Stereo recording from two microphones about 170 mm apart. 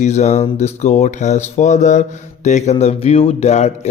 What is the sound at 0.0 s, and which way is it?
Speech, 45° left (ahead or behind).